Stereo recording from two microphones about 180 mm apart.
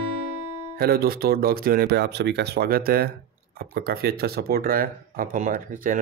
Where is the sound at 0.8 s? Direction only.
60° right (ahead or behind).